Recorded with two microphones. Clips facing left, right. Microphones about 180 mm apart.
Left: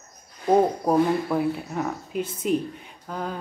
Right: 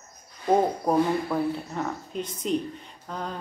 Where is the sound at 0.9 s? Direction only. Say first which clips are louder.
Left 2 dB; 5° left (ahead or behind).